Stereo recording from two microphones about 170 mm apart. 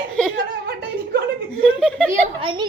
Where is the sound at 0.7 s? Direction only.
70° right (ahead or behind).